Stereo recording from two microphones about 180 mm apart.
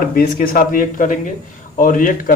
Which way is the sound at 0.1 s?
50° left (ahead or behind).